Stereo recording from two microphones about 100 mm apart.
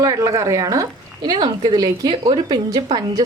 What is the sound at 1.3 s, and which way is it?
A woman's voice, 50° right (ahead or behind).